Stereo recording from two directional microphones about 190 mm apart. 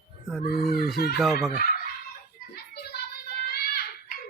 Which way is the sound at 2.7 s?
60° left (ahead or behind).